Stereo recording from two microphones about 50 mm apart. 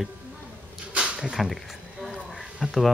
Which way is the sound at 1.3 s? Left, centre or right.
Centre.